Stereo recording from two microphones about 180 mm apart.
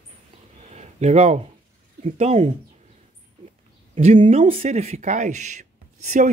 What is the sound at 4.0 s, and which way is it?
Speech, 40° right (ahead or behind).